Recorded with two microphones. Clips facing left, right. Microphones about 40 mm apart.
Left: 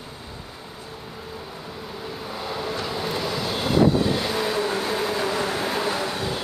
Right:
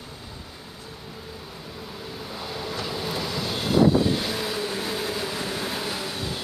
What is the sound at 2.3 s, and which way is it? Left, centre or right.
Vehicle, centre.